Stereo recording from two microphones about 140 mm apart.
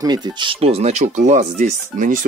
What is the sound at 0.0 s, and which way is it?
Speech, 30° right (ahead or behind).